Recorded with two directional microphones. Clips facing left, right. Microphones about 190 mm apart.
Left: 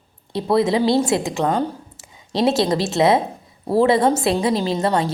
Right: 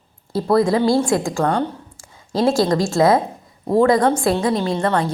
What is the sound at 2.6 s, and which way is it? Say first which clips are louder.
A woman's voice: right 2 dB; 20° left (ahead or behind).